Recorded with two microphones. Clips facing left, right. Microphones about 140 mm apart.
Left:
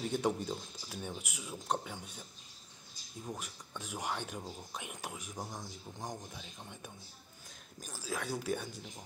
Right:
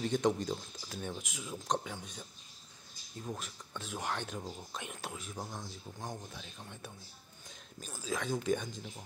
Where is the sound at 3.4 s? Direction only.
15° left (ahead or behind).